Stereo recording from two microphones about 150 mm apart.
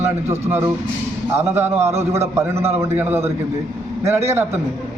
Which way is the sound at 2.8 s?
15° right (ahead or behind).